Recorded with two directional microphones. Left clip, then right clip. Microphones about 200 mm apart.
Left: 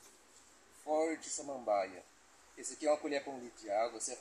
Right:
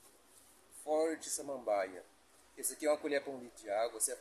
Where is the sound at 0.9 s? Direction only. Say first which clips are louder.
Even; centre (ahead or behind).